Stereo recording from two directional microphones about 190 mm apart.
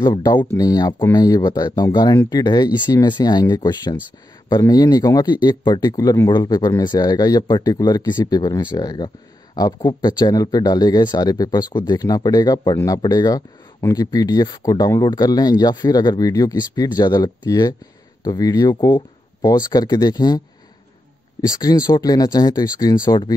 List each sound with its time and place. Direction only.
0.0 s speech: 20° left (ahead or behind)
21.5 s speech: 20° left (ahead or behind)